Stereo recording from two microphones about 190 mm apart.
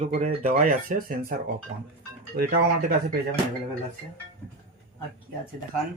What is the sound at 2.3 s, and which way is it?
Speech, 55° right (ahead or behind).